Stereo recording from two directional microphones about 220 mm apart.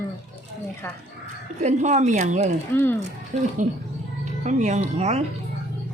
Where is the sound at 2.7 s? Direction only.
10° left (ahead or behind).